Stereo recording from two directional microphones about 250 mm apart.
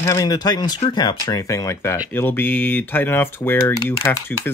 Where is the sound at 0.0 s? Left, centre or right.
Centre.